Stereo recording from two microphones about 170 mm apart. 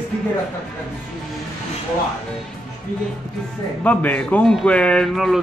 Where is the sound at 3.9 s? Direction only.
10° left (ahead or behind).